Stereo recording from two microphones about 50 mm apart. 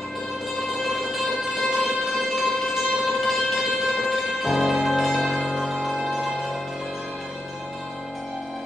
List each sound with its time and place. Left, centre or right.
0.8 s music: centre